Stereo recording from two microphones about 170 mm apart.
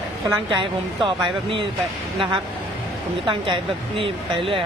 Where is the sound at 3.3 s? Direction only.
30° right (ahead or behind).